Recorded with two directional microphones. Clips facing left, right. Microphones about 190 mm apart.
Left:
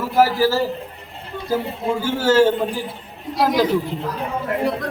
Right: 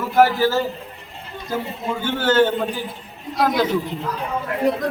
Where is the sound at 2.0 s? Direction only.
30° left (ahead or behind).